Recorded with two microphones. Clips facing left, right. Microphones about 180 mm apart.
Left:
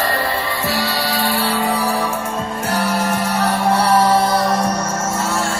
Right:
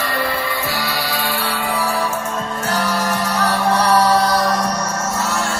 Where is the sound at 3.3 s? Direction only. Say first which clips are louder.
Even; 25° left (ahead or behind).